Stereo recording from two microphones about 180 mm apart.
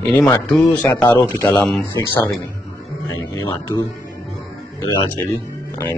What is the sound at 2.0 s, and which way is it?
Speech, 15° left (ahead or behind).